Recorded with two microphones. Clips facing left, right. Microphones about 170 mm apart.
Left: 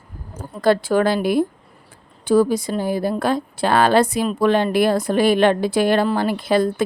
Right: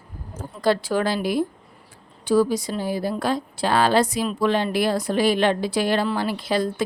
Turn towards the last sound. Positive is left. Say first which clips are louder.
# left 5 dB
turn(degrees=55)  # may be behind; listen again after turning